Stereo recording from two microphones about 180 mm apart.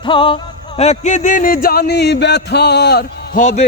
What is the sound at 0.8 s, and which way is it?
Speech, 40° left (ahead or behind).